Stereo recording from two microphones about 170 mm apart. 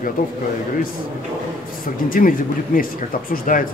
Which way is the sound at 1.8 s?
55° left (ahead or behind).